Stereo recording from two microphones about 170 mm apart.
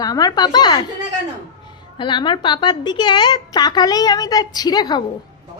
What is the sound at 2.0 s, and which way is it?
A woman's voice, 30° left (ahead or behind).